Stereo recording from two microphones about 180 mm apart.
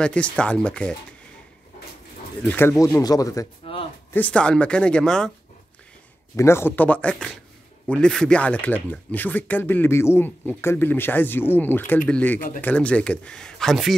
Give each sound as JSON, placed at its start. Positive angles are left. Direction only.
{"t": 0.0, "sound": "speech", "side_deg": 5}
{"t": 2.4, "sound": "speech", "side_deg": 10}
{"t": 4.1, "sound": "speech", "side_deg": 5}
{"t": 6.3, "sound": "speech", "side_deg": 15}